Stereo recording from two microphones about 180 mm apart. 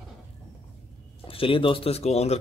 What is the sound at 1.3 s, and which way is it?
Speech, 30° left (ahead or behind).